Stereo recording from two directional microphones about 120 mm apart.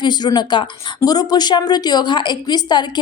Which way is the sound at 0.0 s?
40° left (ahead or behind).